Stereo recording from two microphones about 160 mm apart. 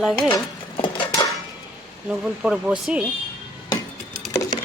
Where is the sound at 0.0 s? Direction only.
Centre (ahead or behind).